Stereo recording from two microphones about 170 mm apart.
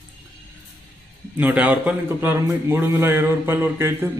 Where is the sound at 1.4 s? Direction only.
10° right (ahead or behind).